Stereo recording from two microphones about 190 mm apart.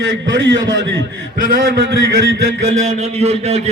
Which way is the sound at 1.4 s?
50° right (ahead or behind).